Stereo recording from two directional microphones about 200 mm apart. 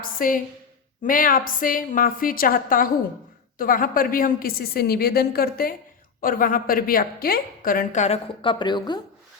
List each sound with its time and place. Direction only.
0.0 s a woman's voice: 45° left (ahead or behind); by 9.0 s 20° left (ahead or behind)